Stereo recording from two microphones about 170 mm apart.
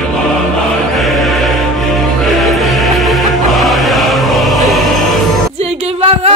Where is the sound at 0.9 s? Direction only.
Centre (ahead or behind).